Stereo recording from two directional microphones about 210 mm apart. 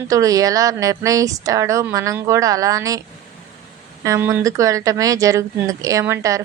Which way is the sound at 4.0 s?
15° right (ahead or behind).